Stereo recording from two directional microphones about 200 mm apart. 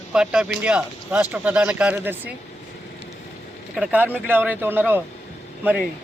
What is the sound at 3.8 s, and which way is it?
Speech, 10° right (ahead or behind).